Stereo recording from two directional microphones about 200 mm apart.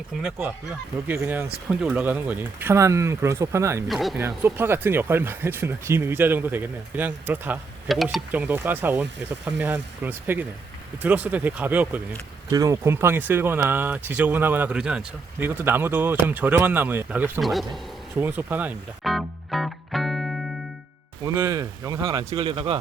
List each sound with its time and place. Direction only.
0.1 s speech: centre (ahead or behind)
3.8 s speech: centre (ahead or behind)
4.2 s speech: 10° right (ahead or behind)
18.2 s music: 10° right (ahead or behind)
21.3 s speech: 15° right (ahead or behind)